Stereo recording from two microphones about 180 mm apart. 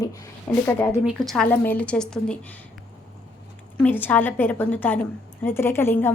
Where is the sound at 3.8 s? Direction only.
10° left (ahead or behind).